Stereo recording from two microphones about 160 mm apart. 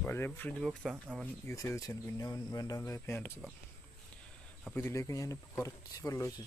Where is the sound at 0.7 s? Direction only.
Centre (ahead or behind).